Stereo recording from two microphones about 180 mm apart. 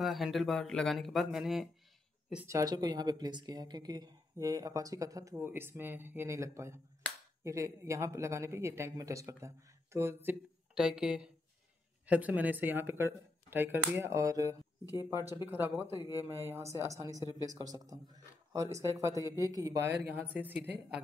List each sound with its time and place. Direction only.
0.0 s speech: centre (ahead or behind)
2.4 s speech: 20° right (ahead or behind)